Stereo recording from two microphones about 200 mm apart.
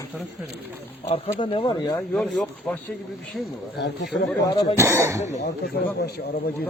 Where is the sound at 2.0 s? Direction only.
5° left (ahead or behind).